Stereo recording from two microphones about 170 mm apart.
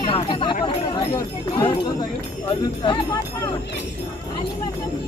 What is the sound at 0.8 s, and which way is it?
Speech, 20° left (ahead or behind).